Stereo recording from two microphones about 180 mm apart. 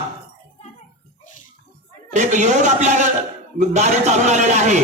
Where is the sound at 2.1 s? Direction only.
45° right (ahead or behind).